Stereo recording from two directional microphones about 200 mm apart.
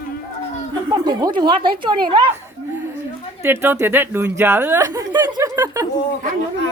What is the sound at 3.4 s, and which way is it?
Speech, 10° right (ahead or behind).